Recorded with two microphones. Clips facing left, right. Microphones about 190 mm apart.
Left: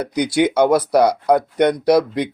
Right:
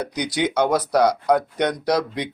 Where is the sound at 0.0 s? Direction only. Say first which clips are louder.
Left 6 dB; 10° left (ahead or behind).